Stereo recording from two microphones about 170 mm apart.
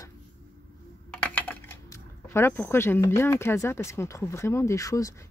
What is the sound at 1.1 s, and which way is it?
Typing, 5° left (ahead or behind).